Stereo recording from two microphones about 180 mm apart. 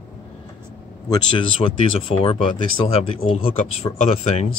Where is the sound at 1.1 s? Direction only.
30° left (ahead or behind).